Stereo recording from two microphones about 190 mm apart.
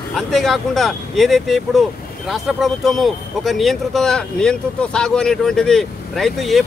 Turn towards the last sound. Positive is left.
turn(degrees=0)  # may be behind; listen again after turning